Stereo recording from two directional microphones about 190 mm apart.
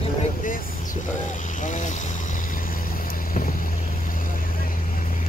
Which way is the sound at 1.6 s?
40° left (ahead or behind).